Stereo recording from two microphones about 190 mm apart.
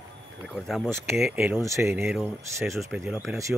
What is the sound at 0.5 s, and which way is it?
Speech, centre (ahead or behind).